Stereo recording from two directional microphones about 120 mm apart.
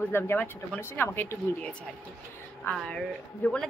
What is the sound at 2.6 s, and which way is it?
Speech, 10° left (ahead or behind).